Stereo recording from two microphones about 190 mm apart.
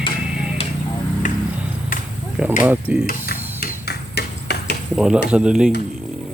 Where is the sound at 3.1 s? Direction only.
55° left (ahead or behind).